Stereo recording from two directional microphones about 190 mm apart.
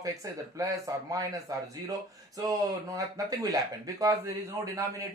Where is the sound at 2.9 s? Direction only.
20° right (ahead or behind).